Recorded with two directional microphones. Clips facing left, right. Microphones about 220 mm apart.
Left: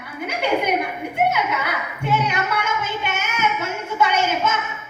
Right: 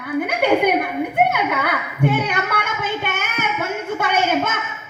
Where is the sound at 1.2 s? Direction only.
55° right (ahead or behind).